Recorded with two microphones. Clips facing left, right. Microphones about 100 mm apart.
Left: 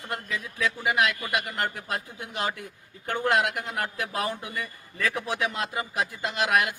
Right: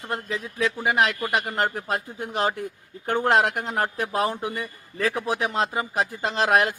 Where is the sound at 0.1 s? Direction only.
30° right (ahead or behind).